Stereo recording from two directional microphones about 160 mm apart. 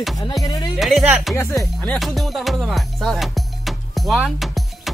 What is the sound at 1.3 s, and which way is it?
Speech, 15° left (ahead or behind).